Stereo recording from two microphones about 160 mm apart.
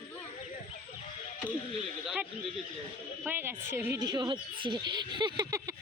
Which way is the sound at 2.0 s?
5° right (ahead or behind).